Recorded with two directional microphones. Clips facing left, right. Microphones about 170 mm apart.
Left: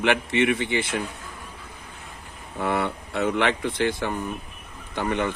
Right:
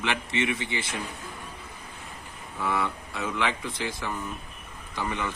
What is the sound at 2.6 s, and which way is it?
Speech, 60° left (ahead or behind).